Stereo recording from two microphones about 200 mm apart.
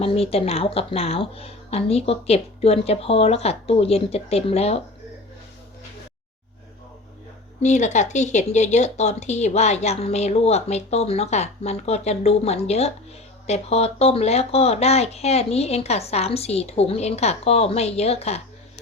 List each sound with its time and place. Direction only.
0.0 s speech: 30° left (ahead or behind)
7.6 s speech: 35° left (ahead or behind)